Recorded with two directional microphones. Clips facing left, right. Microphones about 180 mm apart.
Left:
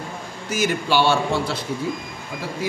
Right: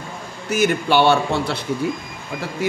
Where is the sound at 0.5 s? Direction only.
60° right (ahead or behind).